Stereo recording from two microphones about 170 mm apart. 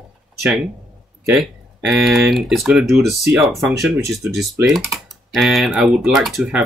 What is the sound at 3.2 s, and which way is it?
Speech, 15° right (ahead or behind).